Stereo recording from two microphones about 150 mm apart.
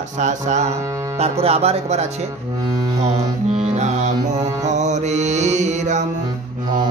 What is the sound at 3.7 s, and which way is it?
Music, 50° right (ahead or behind).